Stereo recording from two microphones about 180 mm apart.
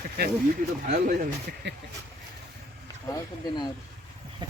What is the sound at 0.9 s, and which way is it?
Speech, 55° right (ahead or behind).